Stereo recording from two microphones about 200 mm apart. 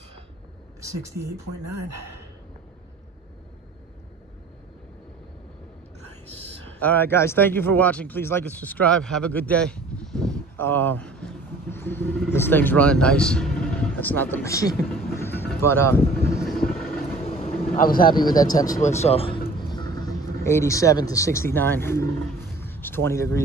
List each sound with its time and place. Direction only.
6.6 s speech: 10° left (ahead or behind)
15.1 s vehicle: 10° left (ahead or behind)
17.0 s vehicle: 30° left (ahead or behind)
17.7 s a man's voice: 45° left (ahead or behind)
18.1 s a man's voice: 20° left (ahead or behind)
18.8 s speech: 35° left (ahead or behind); by 22.1 s 10° left (ahead or behind)
22.6 s a sound: 10° left (ahead or behind)